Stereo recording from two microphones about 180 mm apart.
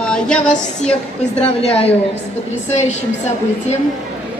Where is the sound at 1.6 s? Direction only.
35° left (ahead or behind).